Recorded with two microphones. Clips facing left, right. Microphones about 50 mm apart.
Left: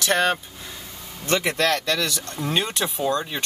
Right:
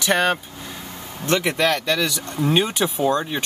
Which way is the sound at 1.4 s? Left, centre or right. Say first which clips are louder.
Right 1 dB; centre.